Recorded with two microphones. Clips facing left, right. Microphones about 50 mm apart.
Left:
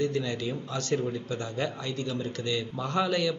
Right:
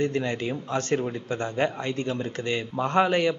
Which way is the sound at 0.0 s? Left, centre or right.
Right.